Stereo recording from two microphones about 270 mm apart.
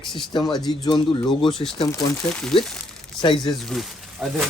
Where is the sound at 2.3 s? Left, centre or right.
Centre.